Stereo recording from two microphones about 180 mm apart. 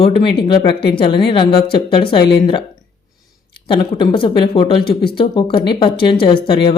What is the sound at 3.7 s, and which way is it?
Speech, 25° left (ahead or behind).